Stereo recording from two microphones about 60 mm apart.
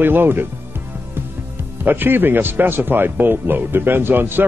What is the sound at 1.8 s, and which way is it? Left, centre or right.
Speech, right.